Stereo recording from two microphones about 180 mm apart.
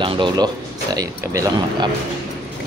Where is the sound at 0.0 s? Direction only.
25° right (ahead or behind).